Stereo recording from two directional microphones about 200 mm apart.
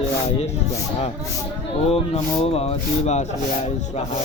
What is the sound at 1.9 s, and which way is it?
Speech, 30° left (ahead or behind).